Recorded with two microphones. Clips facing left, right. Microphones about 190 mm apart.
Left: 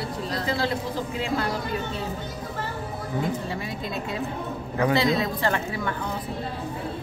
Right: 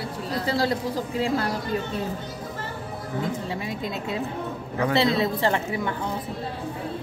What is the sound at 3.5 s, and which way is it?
Speech, 25° right (ahead or behind).